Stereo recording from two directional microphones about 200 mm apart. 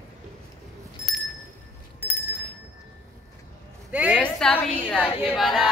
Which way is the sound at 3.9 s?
5° right (ahead or behind).